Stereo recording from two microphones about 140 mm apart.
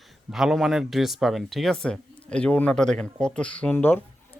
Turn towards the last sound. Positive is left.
turn(degrees=15)  # may be behind; listen again after turning